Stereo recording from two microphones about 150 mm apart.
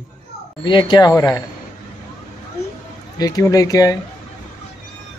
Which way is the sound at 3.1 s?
25° left (ahead or behind).